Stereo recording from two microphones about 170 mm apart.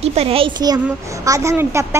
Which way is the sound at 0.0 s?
35° right (ahead or behind).